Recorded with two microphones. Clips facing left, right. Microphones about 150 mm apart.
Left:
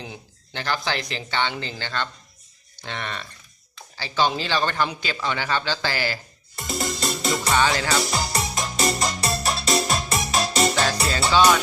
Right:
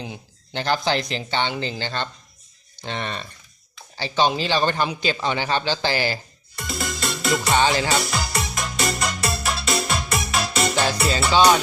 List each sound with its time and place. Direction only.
0.5 s speech: 20° right (ahead or behind)
6.6 s music: 40° left (ahead or behind)
7.5 s speech: 20° right (ahead or behind)
8.0 s music: 35° left (ahead or behind)